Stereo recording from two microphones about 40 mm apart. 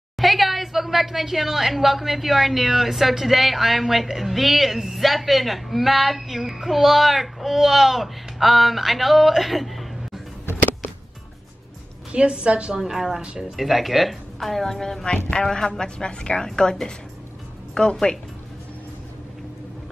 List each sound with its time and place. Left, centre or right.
0.2 s a woman's voice: centre
10.4 s music: left
12.1 s a woman's voice: right
12.9 s a woman's voice: centre; by 17.9 s left